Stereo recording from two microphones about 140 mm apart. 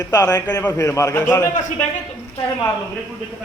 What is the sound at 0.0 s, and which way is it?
A man's voice, 25° left (ahead or behind).